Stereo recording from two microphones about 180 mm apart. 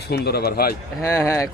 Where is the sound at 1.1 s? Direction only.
15° left (ahead or behind).